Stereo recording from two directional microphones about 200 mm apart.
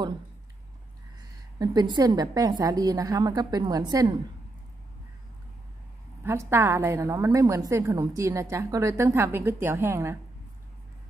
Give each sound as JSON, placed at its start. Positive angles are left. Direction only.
{"t": 1.6, "sound": "a woman's voice", "side_deg": -20}
{"t": 6.2, "sound": "a woman's voice", "side_deg": -15}